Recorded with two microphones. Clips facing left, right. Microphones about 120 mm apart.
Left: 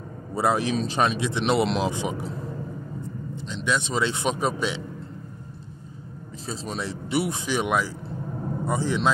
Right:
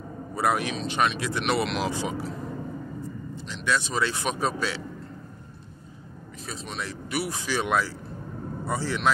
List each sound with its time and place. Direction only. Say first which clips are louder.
0.3 s a man's voice: left 3 dB; 25° left (ahead or behind)
3.3 s a man's voice: left 1 dB; 20° left (ahead or behind)
6.4 s a man's voice: left 4 dB; 30° left (ahead or behind)